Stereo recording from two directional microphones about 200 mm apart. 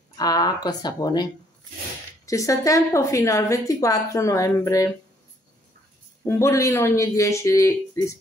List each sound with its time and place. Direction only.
0.2 s a woman's voice: 20° left (ahead or behind)
6.2 s a woman's voice: 15° left (ahead or behind)